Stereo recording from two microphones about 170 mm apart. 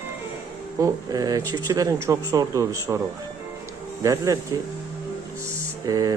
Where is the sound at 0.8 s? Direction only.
20° right (ahead or behind).